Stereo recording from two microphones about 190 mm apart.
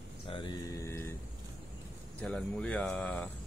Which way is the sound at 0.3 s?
25° left (ahead or behind).